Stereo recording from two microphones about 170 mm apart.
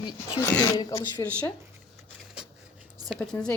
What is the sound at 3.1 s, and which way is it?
Speech, 5° left (ahead or behind).